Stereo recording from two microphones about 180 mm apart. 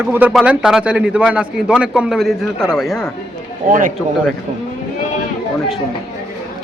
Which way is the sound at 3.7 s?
50° right (ahead or behind).